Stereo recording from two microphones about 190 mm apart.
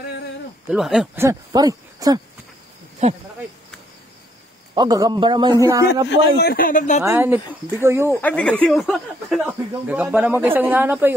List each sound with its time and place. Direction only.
0.7 s speech: centre (ahead or behind)
1.2 s a man's voice: 20° right (ahead or behind)
4.7 s a man's voice: 20° right (ahead or behind)
6.0 s a man's voice: 55° left (ahead or behind)
7.0 s speech: 10° right (ahead or behind)
8.2 s speech: 5° left (ahead or behind); by 11.1 s 10° right (ahead or behind)